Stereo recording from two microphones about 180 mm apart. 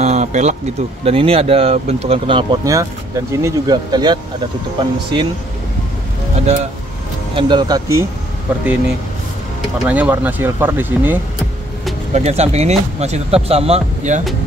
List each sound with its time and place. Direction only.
0.0 s a sound: 40° right (ahead or behind)
1.0 s speech: 30° right (ahead or behind)
2.7 s speech: 15° right (ahead or behind)
6.4 s speech: 40° right (ahead or behind)
7.3 s speech: 25° right (ahead or behind); by 8.6 s 10° right (ahead or behind)
9.8 s speech: 10° right (ahead or behind)
12.1 s speech: 35° right (ahead or behind)